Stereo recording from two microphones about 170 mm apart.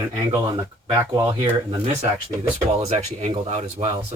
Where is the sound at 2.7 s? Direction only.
40° right (ahead or behind).